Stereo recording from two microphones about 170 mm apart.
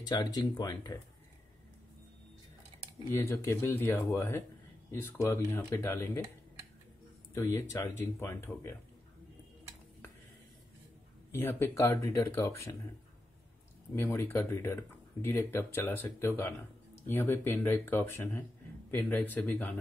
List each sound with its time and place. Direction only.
0.0 s speech: 25° left (ahead or behind)
3.1 s speech: 15° left (ahead or behind)
7.3 s speech: 15° left (ahead or behind)
11.3 s speech: 15° left (ahead or behind)
13.9 s speech: 15° left (ahead or behind)